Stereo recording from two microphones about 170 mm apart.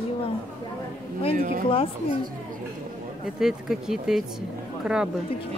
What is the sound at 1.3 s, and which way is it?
Speech, 60° right (ahead or behind).